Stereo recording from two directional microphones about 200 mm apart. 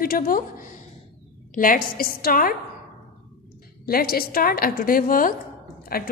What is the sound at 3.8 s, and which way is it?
A woman's voice, 50° left (ahead or behind).